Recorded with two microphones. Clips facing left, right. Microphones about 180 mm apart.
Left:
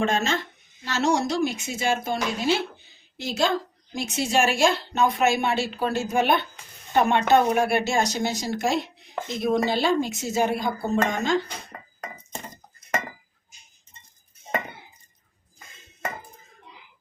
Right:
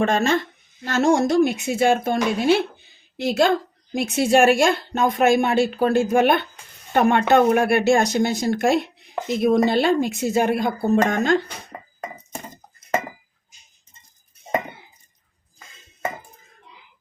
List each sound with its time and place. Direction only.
0.0 s speech: 55° right (ahead or behind)